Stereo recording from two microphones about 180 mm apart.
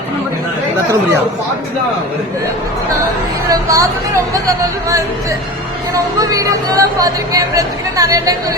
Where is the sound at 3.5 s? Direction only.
15° right (ahead or behind).